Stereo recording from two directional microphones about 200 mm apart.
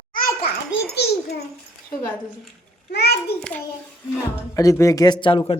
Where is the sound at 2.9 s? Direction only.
55° left (ahead or behind).